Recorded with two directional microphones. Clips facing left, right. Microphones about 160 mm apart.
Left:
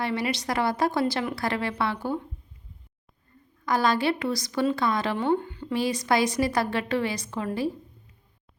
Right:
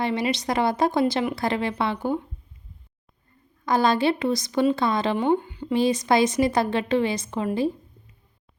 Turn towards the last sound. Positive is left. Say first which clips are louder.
# right 4 dB
turn(degrees=-20)  # may be behind; listen again after turning